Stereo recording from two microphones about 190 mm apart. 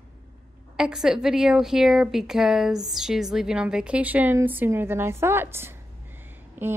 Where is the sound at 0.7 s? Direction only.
5° right (ahead or behind).